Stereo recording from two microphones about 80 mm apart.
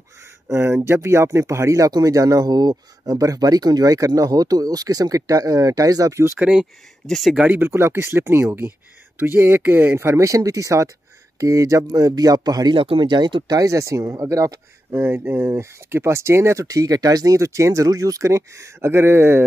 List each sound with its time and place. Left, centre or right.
0.5 s speech: right
7.1 s speech: centre
7.3 s speech: right
12.7 s speech: right
14.9 s speech: right